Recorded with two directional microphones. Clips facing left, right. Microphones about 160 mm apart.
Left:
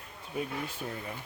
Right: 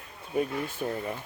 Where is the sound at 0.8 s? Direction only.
45° right (ahead or behind).